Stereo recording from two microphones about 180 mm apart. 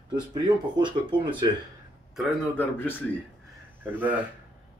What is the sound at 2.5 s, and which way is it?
Speech, 10° left (ahead or behind).